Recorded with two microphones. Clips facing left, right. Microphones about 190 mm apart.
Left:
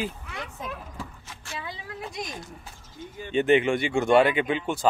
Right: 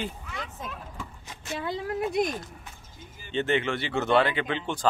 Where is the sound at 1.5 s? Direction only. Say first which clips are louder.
Right 7 dB; 55° right (ahead or behind).